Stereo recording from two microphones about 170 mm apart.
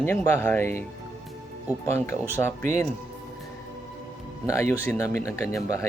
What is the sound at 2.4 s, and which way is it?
Speech, 20° left (ahead or behind).